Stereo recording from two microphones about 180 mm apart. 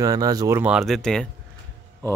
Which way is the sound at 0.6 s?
5° right (ahead or behind).